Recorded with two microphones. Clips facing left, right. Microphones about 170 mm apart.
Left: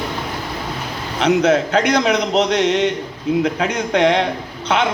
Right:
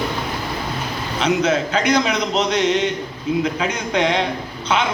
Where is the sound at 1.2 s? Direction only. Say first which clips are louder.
Left 4 dB; 65° left (ahead or behind).